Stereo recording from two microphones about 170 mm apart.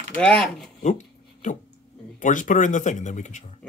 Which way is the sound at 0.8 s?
45° left (ahead or behind).